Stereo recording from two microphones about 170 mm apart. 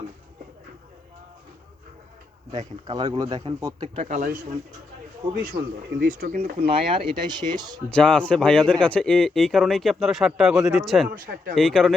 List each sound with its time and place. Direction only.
2.6 s a man's voice: 25° right (ahead or behind)
3.9 s speech: 50° right (ahead or behind)
5.5 s a man's voice: 25° right (ahead or behind)
6.0 s speech: 60° right (ahead or behind)
6.7 s a man's voice: 30° right (ahead or behind)
7.9 s speech: 5° left (ahead or behind)